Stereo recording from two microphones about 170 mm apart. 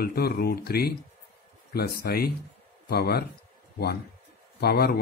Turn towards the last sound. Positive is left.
turn(degrees=65)  # may be behind; listen again after turning